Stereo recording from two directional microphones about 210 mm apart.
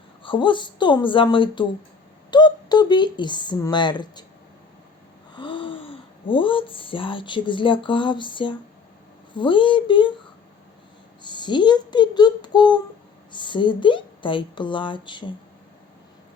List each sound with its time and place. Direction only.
0.2 s a woman's voice: 25° left (ahead or behind)
5.3 s a woman's voice: 25° left (ahead or behind)
11.2 s a woman's voice: 20° left (ahead or behind)